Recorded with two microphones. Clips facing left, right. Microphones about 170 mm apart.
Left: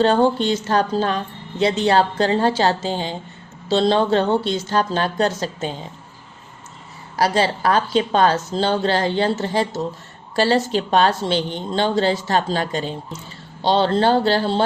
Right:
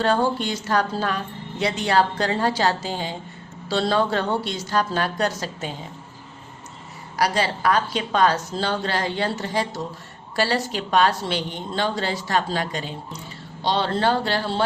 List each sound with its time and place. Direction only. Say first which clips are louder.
0.0 s a woman's voice: left 5 dB; 25° left (ahead or behind)
7.2 s a woman's voice: left 4 dB; 30° left (ahead or behind)